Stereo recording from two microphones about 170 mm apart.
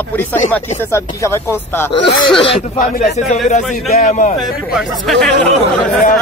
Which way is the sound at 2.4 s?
35° left (ahead or behind).